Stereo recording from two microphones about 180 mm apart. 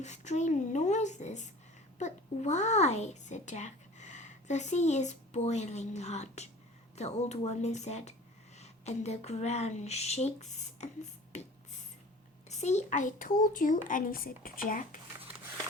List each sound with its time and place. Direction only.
0.0 s a child's voice: 40° left (ahead or behind)
12.5 s a child's voice: 40° left (ahead or behind)